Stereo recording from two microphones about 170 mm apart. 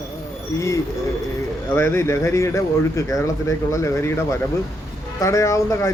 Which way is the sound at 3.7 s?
15° left (ahead or behind).